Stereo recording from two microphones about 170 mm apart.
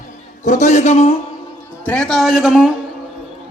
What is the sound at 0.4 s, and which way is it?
Speech, 45° left (ahead or behind).